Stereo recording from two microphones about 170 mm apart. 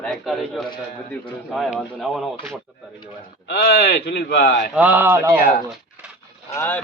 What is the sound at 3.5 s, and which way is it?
Speech, 70° left (ahead or behind).